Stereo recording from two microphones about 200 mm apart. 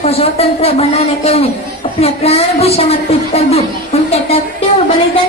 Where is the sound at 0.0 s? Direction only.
30° left (ahead or behind).